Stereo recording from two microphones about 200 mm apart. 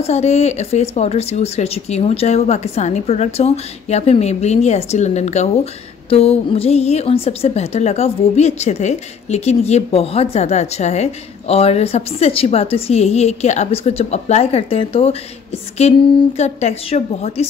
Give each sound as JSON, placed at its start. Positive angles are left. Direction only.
{"t": 0.0, "sound": "a woman's voice", "side_deg": 30}